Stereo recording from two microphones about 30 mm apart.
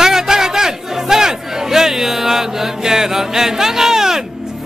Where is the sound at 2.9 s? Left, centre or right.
Centre.